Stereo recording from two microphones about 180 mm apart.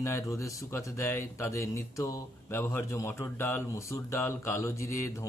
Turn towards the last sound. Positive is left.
turn(degrees=15)  # may be behind; listen again after turning